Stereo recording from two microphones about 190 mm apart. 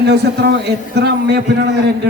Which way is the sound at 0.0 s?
60° right (ahead or behind).